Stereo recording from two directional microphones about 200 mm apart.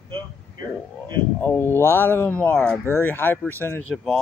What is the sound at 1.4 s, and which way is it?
Speech, 10° left (ahead or behind).